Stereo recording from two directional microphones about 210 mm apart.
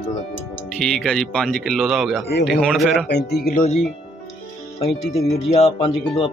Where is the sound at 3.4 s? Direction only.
40° left (ahead or behind).